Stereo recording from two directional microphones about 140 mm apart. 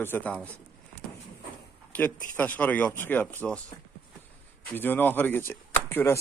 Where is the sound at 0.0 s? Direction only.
15° left (ahead or behind).